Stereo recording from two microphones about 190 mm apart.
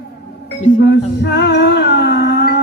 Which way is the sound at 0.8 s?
65° left (ahead or behind).